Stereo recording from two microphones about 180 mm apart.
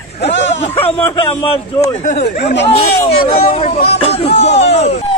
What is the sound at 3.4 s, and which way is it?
Speech, 30° left (ahead or behind).